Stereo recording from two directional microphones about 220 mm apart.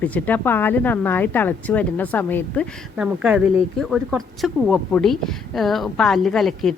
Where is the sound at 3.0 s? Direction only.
5° right (ahead or behind).